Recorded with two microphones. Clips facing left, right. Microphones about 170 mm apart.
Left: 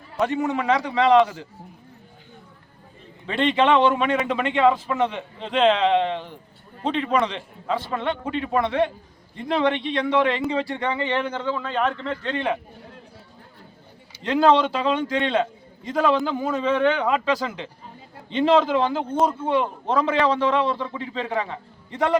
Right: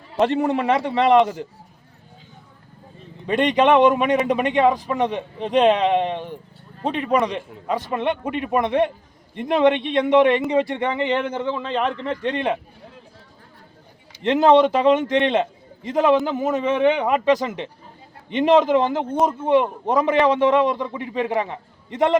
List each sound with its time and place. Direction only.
0.3 s a man's voice: 30° right (ahead or behind)
3.2 s a man's voice: 15° right (ahead or behind)
14.3 s a man's voice: 20° right (ahead or behind)